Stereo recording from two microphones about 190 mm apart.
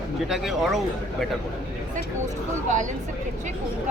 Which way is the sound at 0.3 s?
Centre (ahead or behind).